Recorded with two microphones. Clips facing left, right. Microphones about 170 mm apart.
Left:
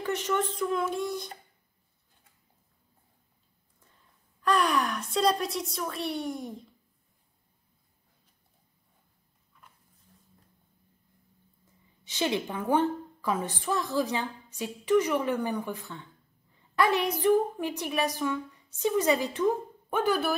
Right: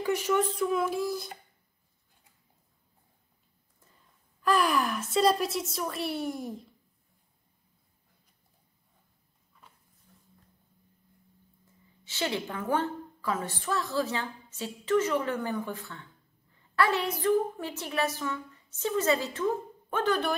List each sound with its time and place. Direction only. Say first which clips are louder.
0.0 s speech: right 2 dB; 10° right (ahead or behind)
3.8 s a woman's voice: right 1 dB; centre (ahead or behind)
12.0 s a woman's voice: left 3 dB; 15° left (ahead or behind)